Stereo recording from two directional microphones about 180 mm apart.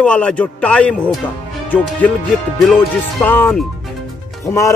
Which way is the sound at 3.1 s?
10° left (ahead or behind).